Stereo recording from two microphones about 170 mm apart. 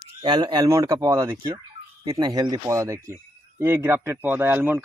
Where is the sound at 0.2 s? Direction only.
25° right (ahead or behind).